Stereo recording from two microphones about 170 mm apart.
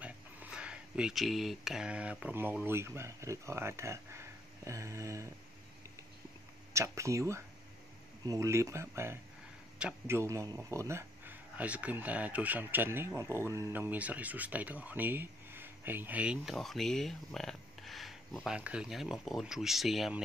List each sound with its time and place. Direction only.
0.0 s speech: 5° right (ahead or behind)
6.7 s speech: 15° right (ahead or behind); by 20.2 s centre (ahead or behind)